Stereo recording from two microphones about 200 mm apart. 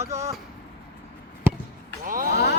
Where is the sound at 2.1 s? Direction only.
40° right (ahead or behind).